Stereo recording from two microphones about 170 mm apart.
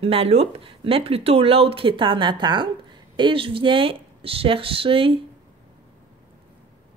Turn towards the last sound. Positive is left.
turn(degrees=-30)  # may be behind; listen again after turning